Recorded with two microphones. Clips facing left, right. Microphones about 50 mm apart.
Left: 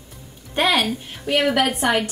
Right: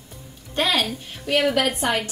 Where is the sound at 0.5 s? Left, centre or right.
Centre.